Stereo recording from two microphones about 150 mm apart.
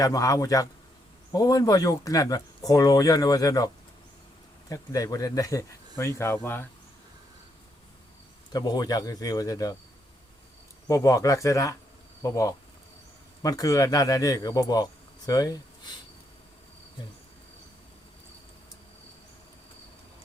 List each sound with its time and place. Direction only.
0.0 s speech: 20° left (ahead or behind)
4.7 s speech: 20° left (ahead or behind)
8.5 s speech: 25° left (ahead or behind)
10.8 s speech: 20° left (ahead or behind)